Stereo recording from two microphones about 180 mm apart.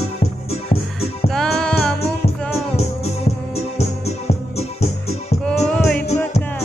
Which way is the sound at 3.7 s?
35° left (ahead or behind).